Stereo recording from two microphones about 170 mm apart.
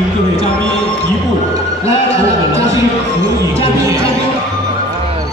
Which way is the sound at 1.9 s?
20° right (ahead or behind).